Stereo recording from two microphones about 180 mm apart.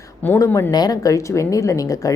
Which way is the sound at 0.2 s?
15° left (ahead or behind).